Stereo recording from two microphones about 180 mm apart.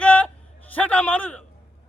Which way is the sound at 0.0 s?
5° left (ahead or behind).